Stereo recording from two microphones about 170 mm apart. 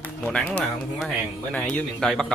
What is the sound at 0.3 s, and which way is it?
Speech, 5° left (ahead or behind).